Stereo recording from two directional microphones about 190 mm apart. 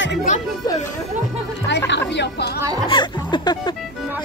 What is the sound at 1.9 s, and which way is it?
Speech, 65° left (ahead or behind).